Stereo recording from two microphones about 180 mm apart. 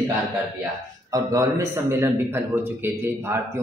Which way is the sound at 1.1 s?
20° right (ahead or behind).